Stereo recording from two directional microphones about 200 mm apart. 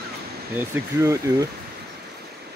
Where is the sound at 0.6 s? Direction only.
15° right (ahead or behind).